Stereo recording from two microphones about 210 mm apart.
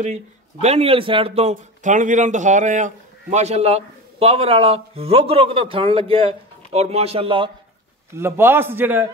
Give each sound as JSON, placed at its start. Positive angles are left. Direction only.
{"t": 0.0, "sound": "a man's voice", "side_deg": -30}
{"t": 8.2, "sound": "a man's voice", "side_deg": -10}